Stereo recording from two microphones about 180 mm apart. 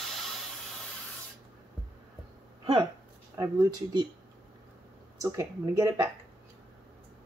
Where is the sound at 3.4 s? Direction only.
20° right (ahead or behind).